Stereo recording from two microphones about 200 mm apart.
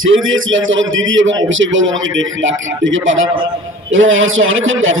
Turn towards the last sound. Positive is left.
turn(degrees=-80)